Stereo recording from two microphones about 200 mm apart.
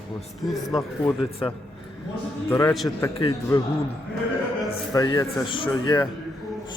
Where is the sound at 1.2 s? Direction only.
30° left (ahead or behind).